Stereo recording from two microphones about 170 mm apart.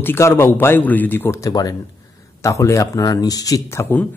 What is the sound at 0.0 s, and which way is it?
Speech, 15° left (ahead or behind).